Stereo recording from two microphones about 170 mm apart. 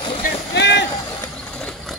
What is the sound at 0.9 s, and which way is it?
Vehicle, 15° left (ahead or behind).